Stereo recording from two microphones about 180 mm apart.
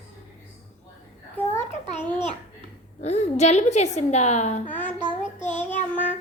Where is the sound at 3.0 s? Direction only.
40° left (ahead or behind).